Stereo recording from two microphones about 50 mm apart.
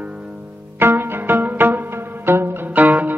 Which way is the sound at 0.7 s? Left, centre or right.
Right.